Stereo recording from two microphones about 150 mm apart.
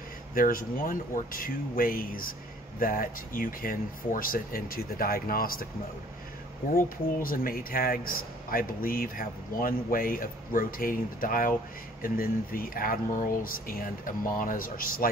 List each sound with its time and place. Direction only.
0.3 s a man's voice: 70° left (ahead or behind)
7.2 s a man's voice: 70° left (ahead or behind)